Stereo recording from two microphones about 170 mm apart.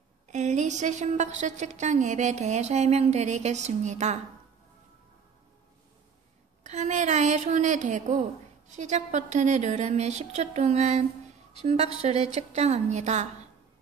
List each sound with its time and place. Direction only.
0.3 s a woman's voice: 45° right (ahead or behind)
6.6 s a woman's voice: 45° right (ahead or behind)